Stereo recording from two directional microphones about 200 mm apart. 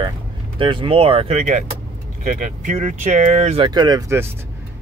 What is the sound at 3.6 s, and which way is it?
Speech, 20° right (ahead or behind).